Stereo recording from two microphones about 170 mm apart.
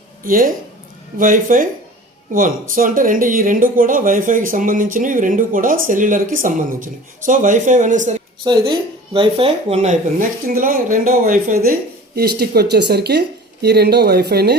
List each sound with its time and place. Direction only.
0.3 s speech: 55° right (ahead or behind)
8.4 s speech: 25° right (ahead or behind); by 14.5 s 70° right (ahead or behind)